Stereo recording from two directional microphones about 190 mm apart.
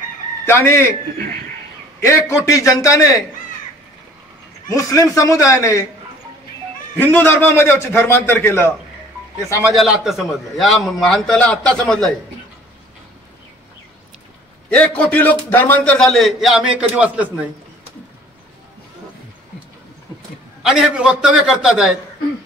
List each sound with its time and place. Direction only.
0.5 s a man's voice: 15° left (ahead or behind)
2.0 s a man's voice: 15° left (ahead or behind)
4.6 s a man's voice: 15° left (ahead or behind)
7.0 s a man's voice: 10° left (ahead or behind)
9.6 s a man's voice: 5° right (ahead or behind)
15.0 s a man's voice: 10° left (ahead or behind)
20.6 s a man's voice: 5° right (ahead or behind)